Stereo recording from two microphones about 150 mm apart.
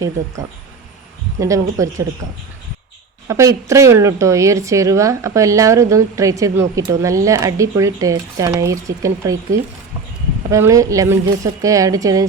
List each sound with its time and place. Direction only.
1.4 s a woman's voice: 20° right (ahead or behind)
3.2 s a woman's voice: 20° right (ahead or behind)